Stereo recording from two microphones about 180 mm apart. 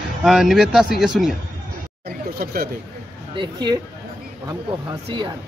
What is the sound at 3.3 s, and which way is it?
Speech, 25° right (ahead or behind).